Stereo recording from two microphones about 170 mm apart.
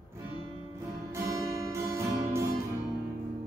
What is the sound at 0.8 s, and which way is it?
Music, 20° right (ahead or behind).